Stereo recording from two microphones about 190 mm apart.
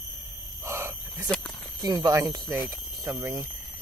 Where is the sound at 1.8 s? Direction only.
20° right (ahead or behind).